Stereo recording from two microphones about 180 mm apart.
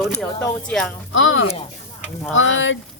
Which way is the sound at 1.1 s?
90° left.